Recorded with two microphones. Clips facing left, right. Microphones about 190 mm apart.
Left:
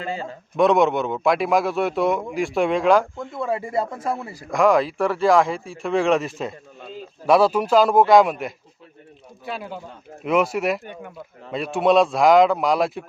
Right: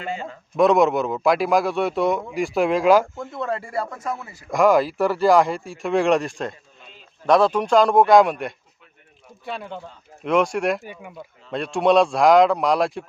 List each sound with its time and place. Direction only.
0.0 s a man's voice: 35° left (ahead or behind)
0.5 s speech: centre (ahead or behind)
3.4 s speech: 15° left (ahead or behind); by 4.4 s 35° left (ahead or behind)
4.5 s speech: centre (ahead or behind)